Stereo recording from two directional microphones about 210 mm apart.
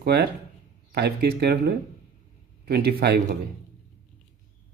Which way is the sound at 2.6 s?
50° right (ahead or behind).